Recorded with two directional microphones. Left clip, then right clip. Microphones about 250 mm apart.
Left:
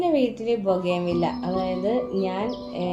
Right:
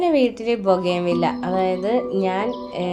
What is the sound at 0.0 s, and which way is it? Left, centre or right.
A woman's voice, centre.